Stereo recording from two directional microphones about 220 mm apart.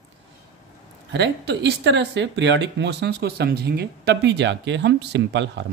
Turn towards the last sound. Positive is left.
turn(degrees=-55)  # may be behind; listen again after turning